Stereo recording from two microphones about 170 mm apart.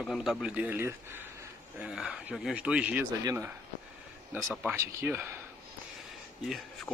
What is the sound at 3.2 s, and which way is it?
Speech, 20° right (ahead or behind).